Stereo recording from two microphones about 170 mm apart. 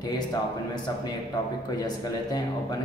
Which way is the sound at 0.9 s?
20° left (ahead or behind).